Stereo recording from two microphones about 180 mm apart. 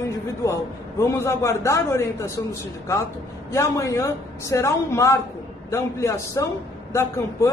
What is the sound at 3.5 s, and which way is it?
A woman's voice, 15° left (ahead or behind).